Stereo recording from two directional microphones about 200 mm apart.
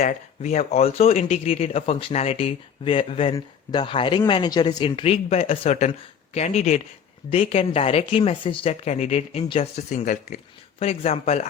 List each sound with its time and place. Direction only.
0.0 s speech: 35° left (ahead or behind)